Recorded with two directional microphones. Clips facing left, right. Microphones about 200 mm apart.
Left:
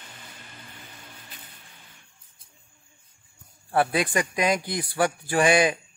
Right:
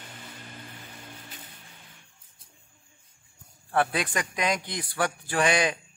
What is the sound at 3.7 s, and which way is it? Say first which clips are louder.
A man's voice: left 3 dB; 10° left (ahead or behind).